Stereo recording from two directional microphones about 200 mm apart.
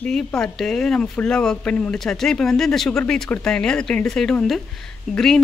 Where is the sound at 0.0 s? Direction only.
5° left (ahead or behind).